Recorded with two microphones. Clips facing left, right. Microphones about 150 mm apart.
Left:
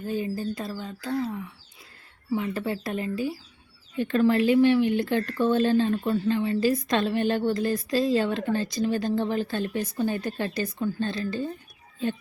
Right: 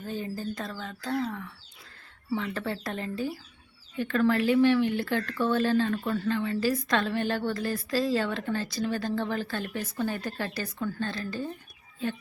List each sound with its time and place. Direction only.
0.1 s speech: 10° left (ahead or behind)
3.9 s a woman's voice: 20° left (ahead or behind)